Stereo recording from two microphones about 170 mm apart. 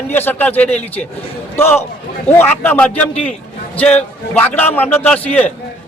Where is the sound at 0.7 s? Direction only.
40° left (ahead or behind).